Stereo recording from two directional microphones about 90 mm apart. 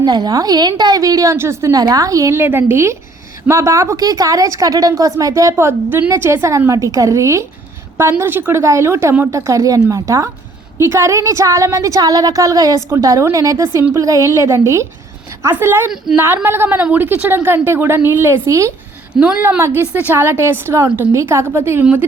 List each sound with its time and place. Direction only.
0.0 s a woman's voice: 50° right (ahead or behind); by 1.8 s 30° right (ahead or behind)
1.8 s a woman's voice: 40° right (ahead or behind)
2.3 s a woman's voice: 25° right (ahead or behind)
19.1 s a woman's voice: 10° right (ahead or behind)
19.4 s a woman's voice: 20° right (ahead or behind)